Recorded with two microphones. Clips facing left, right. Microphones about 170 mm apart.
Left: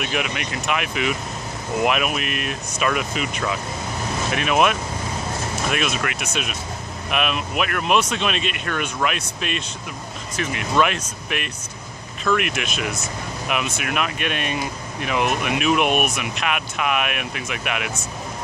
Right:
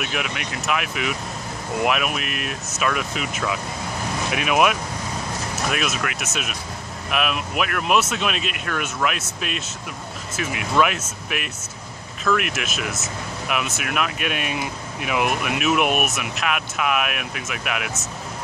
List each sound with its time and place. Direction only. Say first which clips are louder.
0.0 s speech: left 2 dB; centre (ahead or behind)